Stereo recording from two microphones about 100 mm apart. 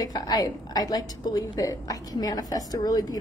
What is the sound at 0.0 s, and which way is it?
A woman's voice, 40° left (ahead or behind).